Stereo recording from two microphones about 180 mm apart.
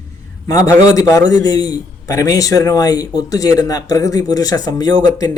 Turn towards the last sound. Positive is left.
turn(degrees=20)  # may be behind; listen again after turning